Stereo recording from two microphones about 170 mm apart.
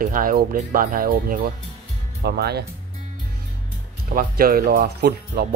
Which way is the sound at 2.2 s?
70° right (ahead or behind).